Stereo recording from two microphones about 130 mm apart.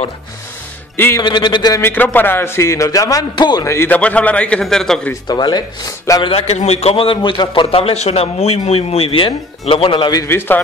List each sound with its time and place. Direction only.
0.9 s a man's voice: 15° left (ahead or behind)
1.2 s speech: 35° left (ahead or behind)
1.8 s a man's voice: 15° left (ahead or behind); by 3.6 s 35° left (ahead or behind)
3.6 s a man's voice: 20° left (ahead or behind)
5.2 s speech: 35° left (ahead or behind)
6.2 s a man's voice: 50° left (ahead or behind)
10.1 s a man's voice: 20° left (ahead or behind)